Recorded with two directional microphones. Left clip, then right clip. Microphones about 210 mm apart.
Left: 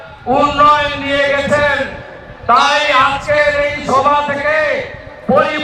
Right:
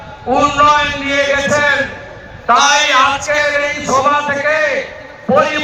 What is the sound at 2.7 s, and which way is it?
Speech, 25° right (ahead or behind).